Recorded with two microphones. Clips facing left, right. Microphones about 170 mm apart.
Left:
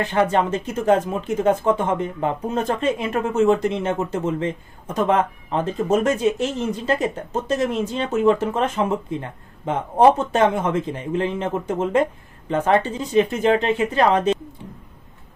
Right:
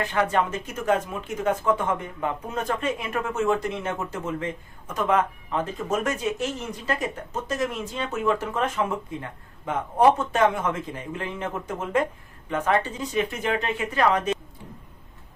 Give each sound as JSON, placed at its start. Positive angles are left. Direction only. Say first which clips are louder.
{"t": 0.0, "sound": "speech", "louder": "left 4 dB", "side_deg": 25}